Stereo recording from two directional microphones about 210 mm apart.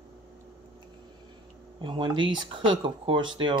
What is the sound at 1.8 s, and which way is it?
Speech, 25° right (ahead or behind).